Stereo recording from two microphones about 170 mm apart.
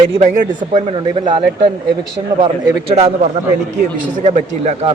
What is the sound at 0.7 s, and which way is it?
Speech, 40° right (ahead or behind).